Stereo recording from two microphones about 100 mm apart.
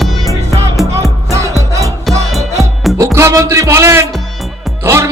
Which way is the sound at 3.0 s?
30° right (ahead or behind).